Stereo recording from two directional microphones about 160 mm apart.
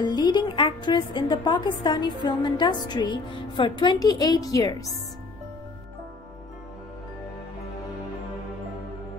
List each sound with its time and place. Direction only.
0.0 s a woman's voice: 25° left (ahead or behind)